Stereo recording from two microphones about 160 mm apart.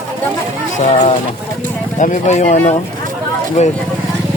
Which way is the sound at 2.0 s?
50° left (ahead or behind).